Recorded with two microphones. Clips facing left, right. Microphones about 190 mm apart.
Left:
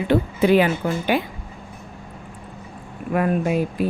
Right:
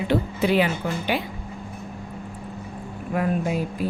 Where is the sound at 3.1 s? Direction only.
65° left (ahead or behind).